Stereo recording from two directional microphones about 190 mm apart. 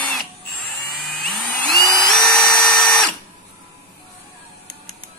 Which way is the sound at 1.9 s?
Centre (ahead or behind).